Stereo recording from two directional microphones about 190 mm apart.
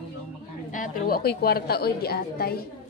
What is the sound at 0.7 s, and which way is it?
A woman's voice, 45° left (ahead or behind).